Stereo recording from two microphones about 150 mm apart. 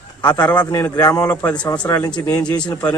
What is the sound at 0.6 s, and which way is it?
Speech, 20° left (ahead or behind).